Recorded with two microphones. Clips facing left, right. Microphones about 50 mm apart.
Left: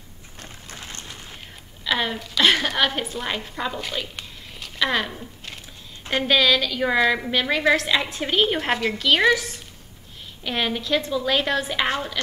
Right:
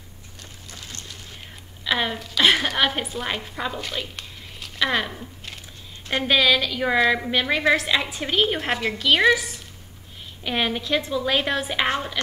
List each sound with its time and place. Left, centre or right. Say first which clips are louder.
0.4 s boat: left 3 dB; left
1.9 s a woman's voice: even; centre
10.4 s a woman's voice: right 1 dB; centre